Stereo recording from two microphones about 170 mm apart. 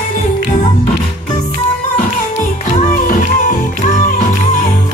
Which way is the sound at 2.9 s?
50° left (ahead or behind).